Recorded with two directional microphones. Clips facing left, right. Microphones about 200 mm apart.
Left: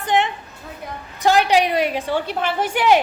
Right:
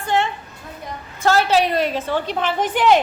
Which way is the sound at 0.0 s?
20° left (ahead or behind).